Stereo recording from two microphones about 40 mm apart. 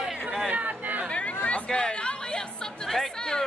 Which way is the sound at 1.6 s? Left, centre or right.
Centre.